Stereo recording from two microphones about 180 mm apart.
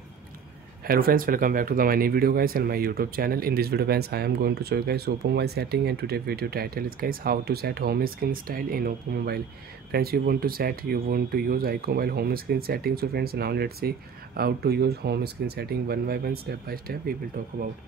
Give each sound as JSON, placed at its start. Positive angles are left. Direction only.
{"t": 0.8, "sound": "speech", "side_deg": -55}